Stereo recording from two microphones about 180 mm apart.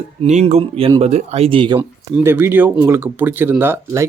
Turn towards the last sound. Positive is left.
turn(degrees=-15)  # may be behind; listen again after turning